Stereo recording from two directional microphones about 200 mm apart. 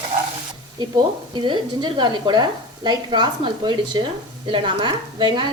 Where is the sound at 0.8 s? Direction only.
20° right (ahead or behind).